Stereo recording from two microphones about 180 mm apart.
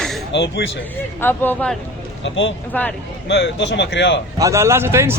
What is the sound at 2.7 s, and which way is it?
Speech, 10° left (ahead or behind).